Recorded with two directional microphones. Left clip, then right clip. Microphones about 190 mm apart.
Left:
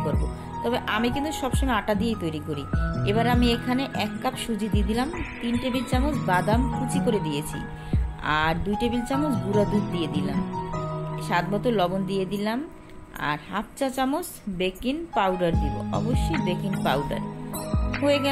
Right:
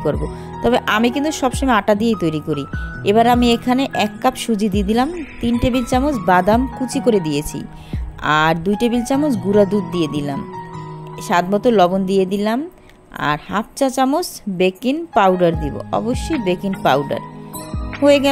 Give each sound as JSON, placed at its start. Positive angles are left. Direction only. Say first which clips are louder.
{"t": 0.0, "sound": "a woman's voice", "louder": "right 9 dB", "side_deg": -50}
{"t": 7.9, "sound": "a woman's voice", "louder": "right 9 dB", "side_deg": -45}
{"t": 11.2, "sound": "a woman's voice", "louder": "right 10 dB", "side_deg": -45}